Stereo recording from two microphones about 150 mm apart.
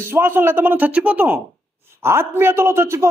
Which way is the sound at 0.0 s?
15° right (ahead or behind).